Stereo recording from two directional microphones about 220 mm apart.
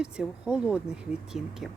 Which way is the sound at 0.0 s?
5° right (ahead or behind).